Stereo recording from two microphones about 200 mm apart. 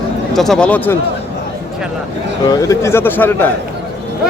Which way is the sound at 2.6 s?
15° left (ahead or behind).